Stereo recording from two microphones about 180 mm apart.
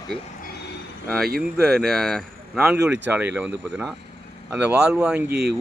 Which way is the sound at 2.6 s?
10° right (ahead or behind).